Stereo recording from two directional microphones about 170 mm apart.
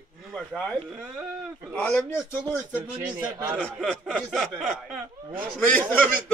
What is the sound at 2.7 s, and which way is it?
Speech, 10° right (ahead or behind).